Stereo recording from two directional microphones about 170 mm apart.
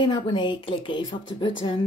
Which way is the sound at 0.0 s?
25° left (ahead or behind).